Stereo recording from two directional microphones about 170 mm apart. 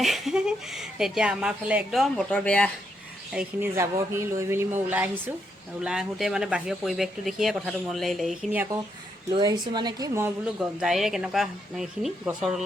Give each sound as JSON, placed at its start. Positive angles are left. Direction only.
{"t": 0.0, "sound": "speech", "side_deg": 0}
{"t": 3.3, "sound": "speech", "side_deg": -15}
{"t": 9.3, "sound": "a woman's voice", "side_deg": -25}
{"t": 10.2, "sound": "speech", "side_deg": -10}